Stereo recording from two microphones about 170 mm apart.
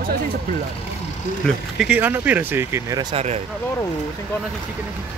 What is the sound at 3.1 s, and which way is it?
Speech, 40° right (ahead or behind).